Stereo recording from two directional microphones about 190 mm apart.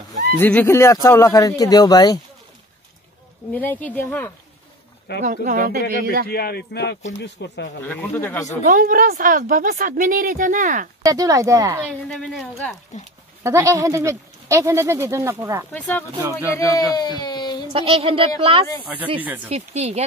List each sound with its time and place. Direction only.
0.4 s speech: 10° left (ahead or behind)
3.5 s speech: 10° left (ahead or behind)
5.2 s a woman's voice: 45° right (ahead or behind)
6.2 s speech: 55° left (ahead or behind)
7.8 s speech: 10° left (ahead or behind)
8.6 s a woman's voice: 45° right (ahead or behind)
11.0 s speech: 20° right (ahead or behind)
12.1 s a woman's voice: 5° left (ahead or behind)
13.4 s speech: 15° right (ahead or behind)
16.5 s speech: 20° left (ahead or behind)
17.7 s speech: 30° right (ahead or behind)
19.2 s speech: 10° right (ahead or behind)
19.5 s speech: 35° right (ahead or behind)